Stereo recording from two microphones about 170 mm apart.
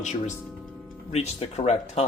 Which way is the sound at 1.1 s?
40° left (ahead or behind).